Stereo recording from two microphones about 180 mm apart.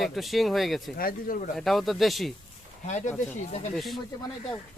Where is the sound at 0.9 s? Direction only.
55° left (ahead or behind).